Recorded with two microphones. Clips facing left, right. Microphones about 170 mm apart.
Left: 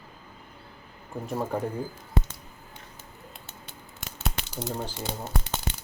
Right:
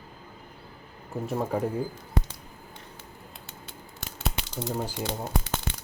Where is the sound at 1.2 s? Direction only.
5° right (ahead or behind).